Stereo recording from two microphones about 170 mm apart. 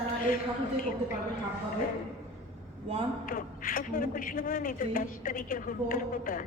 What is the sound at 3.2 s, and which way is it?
A man's voice, 55° left (ahead or behind).